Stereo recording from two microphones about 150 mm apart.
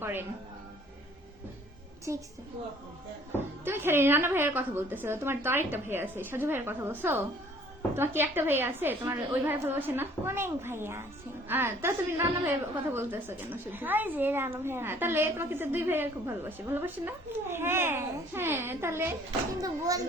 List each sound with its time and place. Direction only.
0.0 s speech: 15° right (ahead or behind)
2.1 s a child's voice: 20° right (ahead or behind)
3.3 s a woman's voice: 15° right (ahead or behind)